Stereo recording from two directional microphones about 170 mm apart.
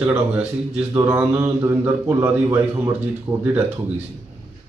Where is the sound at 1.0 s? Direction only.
20° right (ahead or behind).